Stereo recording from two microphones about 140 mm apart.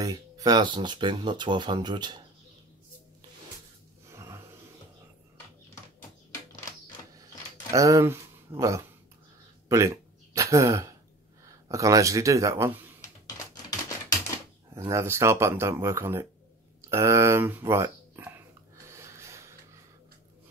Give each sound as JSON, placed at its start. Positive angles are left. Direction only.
{"t": 0.0, "sound": "speech", "side_deg": -25}
{"t": 4.1, "sound": "snort", "side_deg": -20}
{"t": 7.7, "sound": "speech", "side_deg": -25}
{"t": 9.7, "sound": "a sound", "side_deg": -20}
{"t": 11.4, "sound": "speech", "side_deg": -25}
{"t": 14.7, "sound": "speech", "side_deg": -20}
{"t": 18.9, "sound": "snort", "side_deg": -20}